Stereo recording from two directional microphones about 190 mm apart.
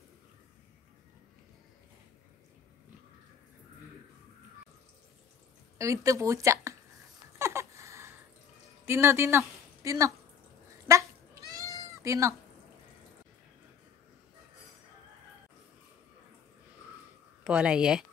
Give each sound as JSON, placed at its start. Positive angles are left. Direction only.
{"t": 5.8, "sound": "speech", "side_deg": -15}
{"t": 7.3, "sound": "a sound", "side_deg": -15}
{"t": 8.8, "sound": "a woman's voice", "side_deg": -15}
{"t": 11.5, "sound": "cat", "side_deg": -15}
{"t": 17.4, "sound": "speech", "side_deg": -5}